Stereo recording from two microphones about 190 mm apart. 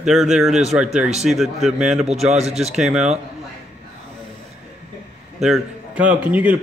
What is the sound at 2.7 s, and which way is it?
Speech, 5° right (ahead or behind).